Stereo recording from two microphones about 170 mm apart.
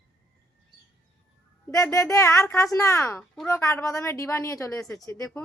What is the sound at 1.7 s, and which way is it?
A woman's voice, 15° left (ahead or behind).